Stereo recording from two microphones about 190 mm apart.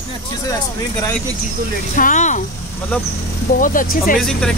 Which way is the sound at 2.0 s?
40° left (ahead or behind).